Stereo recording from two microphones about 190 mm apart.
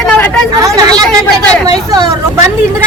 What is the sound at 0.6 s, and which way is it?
Speech, 20° right (ahead or behind).